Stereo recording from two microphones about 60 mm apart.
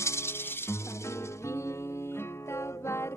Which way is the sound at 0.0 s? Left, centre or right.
Left.